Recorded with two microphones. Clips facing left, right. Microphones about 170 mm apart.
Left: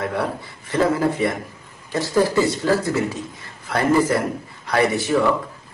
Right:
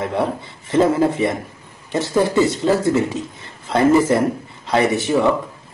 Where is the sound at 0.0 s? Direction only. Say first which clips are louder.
Right 3 dB; 25° right (ahead or behind).